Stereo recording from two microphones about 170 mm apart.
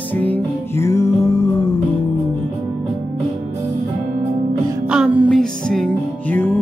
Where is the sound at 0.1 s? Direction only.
10° left (ahead or behind).